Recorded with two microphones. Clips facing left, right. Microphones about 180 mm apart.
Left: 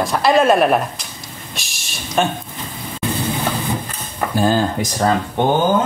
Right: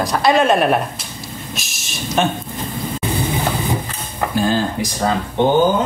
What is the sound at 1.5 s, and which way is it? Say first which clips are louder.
Vehicle: right 3 dB; centre (ahead or behind).